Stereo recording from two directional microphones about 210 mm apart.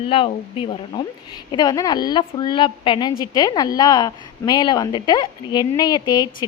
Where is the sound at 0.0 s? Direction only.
25° left (ahead or behind).